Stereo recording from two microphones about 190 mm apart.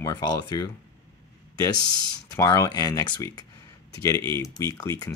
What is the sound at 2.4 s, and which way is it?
Speech, 15° left (ahead or behind).